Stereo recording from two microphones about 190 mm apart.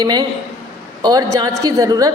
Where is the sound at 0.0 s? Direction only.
20° right (ahead or behind).